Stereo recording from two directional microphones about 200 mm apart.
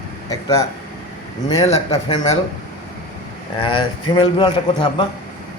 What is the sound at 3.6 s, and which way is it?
A man's voice, 25° left (ahead or behind).